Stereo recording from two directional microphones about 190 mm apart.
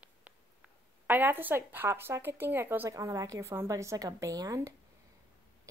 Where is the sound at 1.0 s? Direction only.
10° right (ahead or behind).